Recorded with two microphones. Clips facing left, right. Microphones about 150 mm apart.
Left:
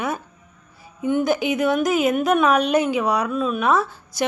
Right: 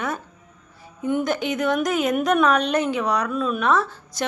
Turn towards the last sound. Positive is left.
turn(degrees=10)  # may be behind; listen again after turning